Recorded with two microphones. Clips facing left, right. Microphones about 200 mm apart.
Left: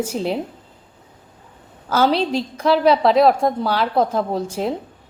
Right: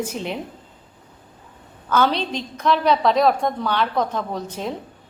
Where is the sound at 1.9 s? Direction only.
30° left (ahead or behind).